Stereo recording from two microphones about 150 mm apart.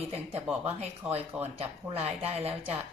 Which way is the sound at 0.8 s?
45° right (ahead or behind).